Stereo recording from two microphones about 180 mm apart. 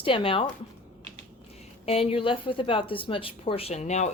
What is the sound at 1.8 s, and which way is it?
A woman's voice, 35° left (ahead or behind).